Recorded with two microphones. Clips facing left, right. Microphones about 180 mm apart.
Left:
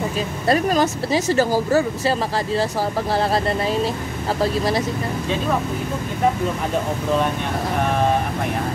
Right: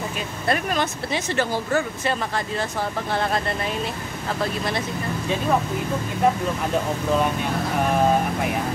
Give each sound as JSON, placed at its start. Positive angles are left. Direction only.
{"t": 0.5, "sound": "speech", "side_deg": 40}